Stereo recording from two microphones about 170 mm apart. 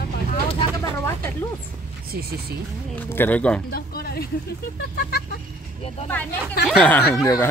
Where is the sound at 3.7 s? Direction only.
65° left (ahead or behind).